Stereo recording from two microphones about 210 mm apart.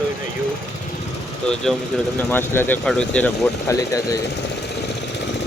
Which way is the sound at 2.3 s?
10° left (ahead or behind).